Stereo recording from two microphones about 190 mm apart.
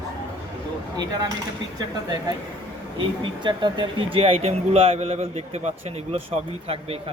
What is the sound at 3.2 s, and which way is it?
Speech, 25° right (ahead or behind).